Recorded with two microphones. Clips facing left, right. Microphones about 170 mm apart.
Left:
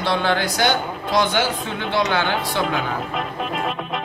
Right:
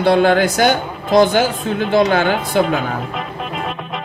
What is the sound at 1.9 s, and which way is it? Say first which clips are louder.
Speech: right 6 dB; 50° right (ahead or behind).